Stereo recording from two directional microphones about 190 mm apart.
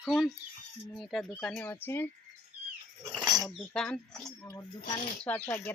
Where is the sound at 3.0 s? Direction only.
20° right (ahead or behind).